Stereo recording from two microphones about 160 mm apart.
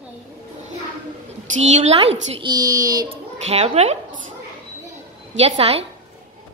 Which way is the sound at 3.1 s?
40° right (ahead or behind).